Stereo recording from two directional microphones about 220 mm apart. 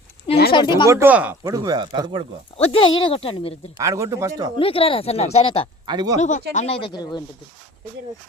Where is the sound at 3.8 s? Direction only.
15° right (ahead or behind).